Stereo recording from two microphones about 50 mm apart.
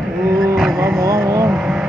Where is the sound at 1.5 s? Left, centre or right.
Centre.